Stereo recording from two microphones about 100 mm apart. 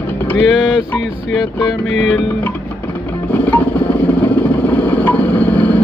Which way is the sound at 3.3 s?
15° left (ahead or behind).